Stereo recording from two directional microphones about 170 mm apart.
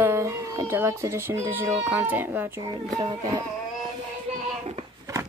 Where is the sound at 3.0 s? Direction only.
20° right (ahead or behind).